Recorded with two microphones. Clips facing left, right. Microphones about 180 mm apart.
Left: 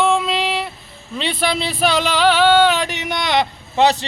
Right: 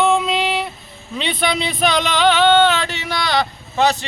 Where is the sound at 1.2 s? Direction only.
Centre (ahead or behind).